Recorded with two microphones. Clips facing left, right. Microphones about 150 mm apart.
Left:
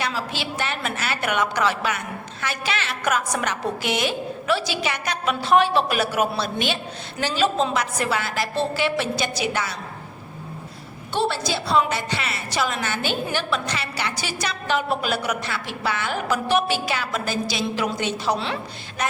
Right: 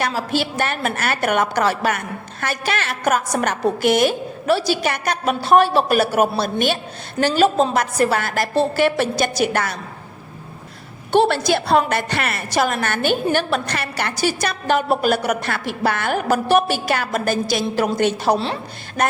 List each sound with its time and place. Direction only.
0.0 s a woman's voice: 45° right (ahead or behind)
11.1 s a woman's voice: 60° right (ahead or behind); by 18.5 s 40° right (ahead or behind)